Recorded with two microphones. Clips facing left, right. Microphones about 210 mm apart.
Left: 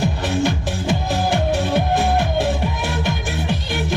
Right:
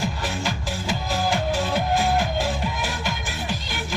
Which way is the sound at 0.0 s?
60° left (ahead or behind).